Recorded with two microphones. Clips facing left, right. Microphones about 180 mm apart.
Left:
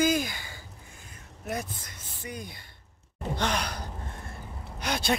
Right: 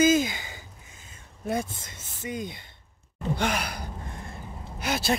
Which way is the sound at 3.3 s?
10° right (ahead or behind).